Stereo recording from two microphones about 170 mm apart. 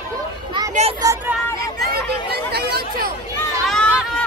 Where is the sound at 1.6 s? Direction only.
70° right (ahead or behind).